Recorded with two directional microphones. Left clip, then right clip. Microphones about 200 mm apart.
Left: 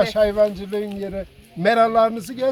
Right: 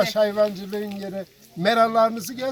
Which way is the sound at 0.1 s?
15° left (ahead or behind).